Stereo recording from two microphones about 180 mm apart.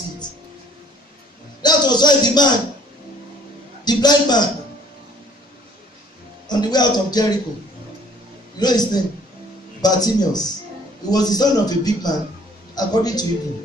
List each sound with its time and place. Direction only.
1.6 s a man's voice: 25° left (ahead or behind)
3.8 s a man's voice: 25° left (ahead or behind)
6.4 s a man's voice: 25° left (ahead or behind)
8.5 s a man's voice: 20° left (ahead or behind)